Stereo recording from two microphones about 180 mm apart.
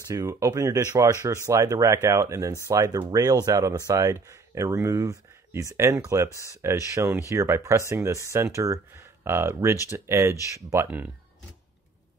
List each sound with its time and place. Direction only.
0.1 s speech: 15° right (ahead or behind)